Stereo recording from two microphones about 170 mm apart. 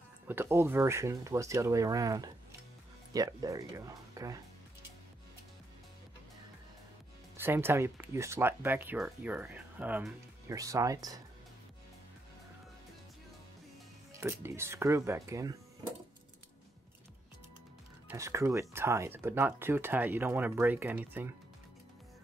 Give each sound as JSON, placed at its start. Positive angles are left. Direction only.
{"t": 0.3, "sound": "speech", "side_deg": -15}
{"t": 7.3, "sound": "speech", "side_deg": -15}
{"t": 14.1, "sound": "speech", "side_deg": -15}
{"t": 18.0, "sound": "speech", "side_deg": -15}